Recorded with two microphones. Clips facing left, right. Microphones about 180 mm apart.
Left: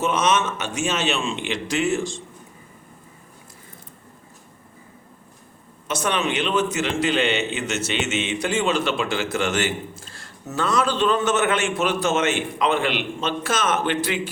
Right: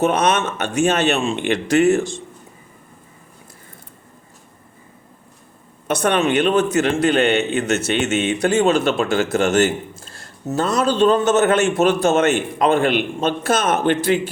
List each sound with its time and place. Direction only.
0.0 s a man's voice: 60° right (ahead or behind)
5.9 s a man's voice: 60° right (ahead or behind)